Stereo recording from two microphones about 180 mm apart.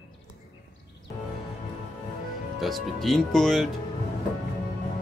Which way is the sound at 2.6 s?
Centre (ahead or behind).